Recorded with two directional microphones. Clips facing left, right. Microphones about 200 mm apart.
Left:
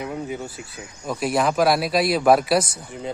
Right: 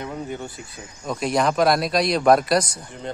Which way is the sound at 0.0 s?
5° left (ahead or behind).